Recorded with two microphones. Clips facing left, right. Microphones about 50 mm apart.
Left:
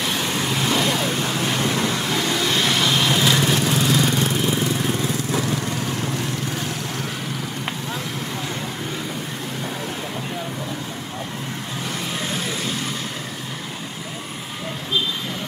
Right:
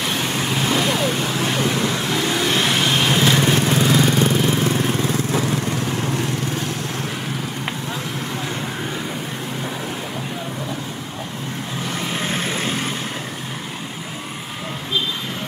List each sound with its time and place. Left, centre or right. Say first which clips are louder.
0.0 s vehicle: right 1 dB; centre
2.3 s vehicle: right 2 dB; right
4.6 s lawn mower: right 3 dB; right
12.3 s vehicle: right 3 dB; right